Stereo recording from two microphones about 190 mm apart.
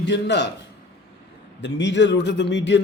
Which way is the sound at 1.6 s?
70° left (ahead or behind).